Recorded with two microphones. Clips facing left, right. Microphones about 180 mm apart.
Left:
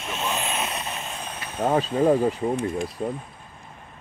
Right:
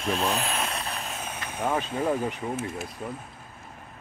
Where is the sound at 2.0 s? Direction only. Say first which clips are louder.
Left 9 dB; 35° left (ahead or behind).